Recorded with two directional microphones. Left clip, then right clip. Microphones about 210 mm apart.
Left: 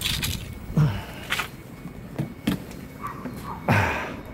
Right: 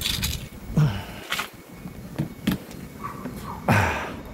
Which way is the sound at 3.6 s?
5° right (ahead or behind).